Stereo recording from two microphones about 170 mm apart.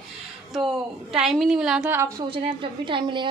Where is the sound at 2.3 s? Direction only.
30° right (ahead or behind).